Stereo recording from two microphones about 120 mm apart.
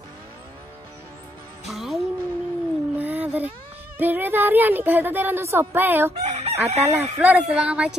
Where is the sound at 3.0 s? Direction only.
15° right (ahead or behind).